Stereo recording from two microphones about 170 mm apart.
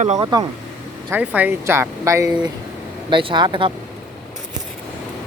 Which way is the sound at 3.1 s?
30° right (ahead or behind).